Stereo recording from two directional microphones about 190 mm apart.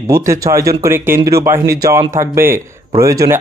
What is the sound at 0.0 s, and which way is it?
Speech, 15° right (ahead or behind).